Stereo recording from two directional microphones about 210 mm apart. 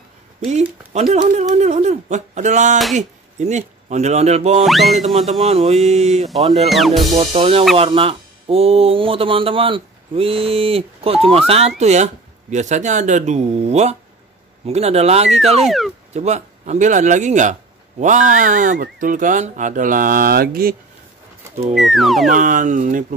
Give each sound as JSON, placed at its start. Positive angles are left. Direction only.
{"t": 0.4, "sound": "speech", "side_deg": -30}
{"t": 4.6, "sound": "speech", "side_deg": 0}
{"t": 5.5, "sound": "speech", "side_deg": -25}
{"t": 6.2, "sound": "speech", "side_deg": 0}
{"t": 7.2, "sound": "speech", "side_deg": -25}
{"t": 15.5, "sound": "speech", "side_deg": 0}
{"t": 16.1, "sound": "speech", "side_deg": -30}
{"t": 21.7, "sound": "speech", "side_deg": 0}
{"t": 22.3, "sound": "speech", "side_deg": -40}